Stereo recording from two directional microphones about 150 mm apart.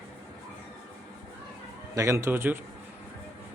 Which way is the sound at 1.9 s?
20° right (ahead or behind).